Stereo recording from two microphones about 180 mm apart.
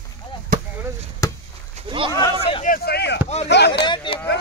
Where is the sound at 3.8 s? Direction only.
25° left (ahead or behind).